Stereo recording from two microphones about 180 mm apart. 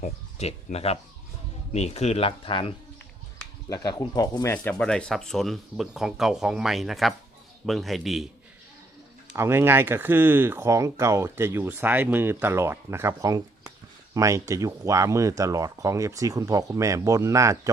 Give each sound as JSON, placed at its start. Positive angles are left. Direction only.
{"t": 0.0, "sound": "speech", "side_deg": 35}
{"t": 4.5, "sound": "speech", "side_deg": 5}
{"t": 9.3, "sound": "speech", "side_deg": -15}